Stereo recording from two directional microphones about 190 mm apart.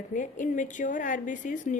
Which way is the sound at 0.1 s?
45° left (ahead or behind).